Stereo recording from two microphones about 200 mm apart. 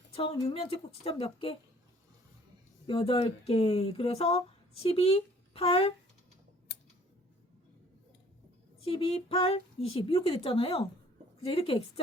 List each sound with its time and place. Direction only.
0.1 s speech: 30° left (ahead or behind)
2.8 s speech: 25° left (ahead or behind)
6.7 s a sound: 60° left (ahead or behind)
8.8 s speech: 30° left (ahead or behind)